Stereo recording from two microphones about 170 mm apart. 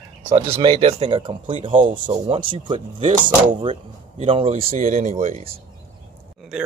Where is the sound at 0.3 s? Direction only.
25° right (ahead or behind).